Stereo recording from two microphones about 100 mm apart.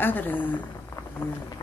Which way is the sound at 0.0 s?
20° left (ahead or behind).